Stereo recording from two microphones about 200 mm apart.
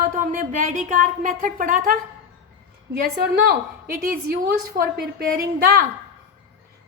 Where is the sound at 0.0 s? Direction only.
45° right (ahead or behind).